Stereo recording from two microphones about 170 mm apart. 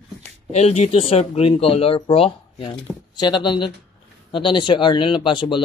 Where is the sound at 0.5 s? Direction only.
40° left (ahead or behind).